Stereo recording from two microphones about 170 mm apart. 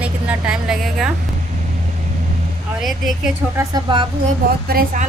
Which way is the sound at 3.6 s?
25° right (ahead or behind).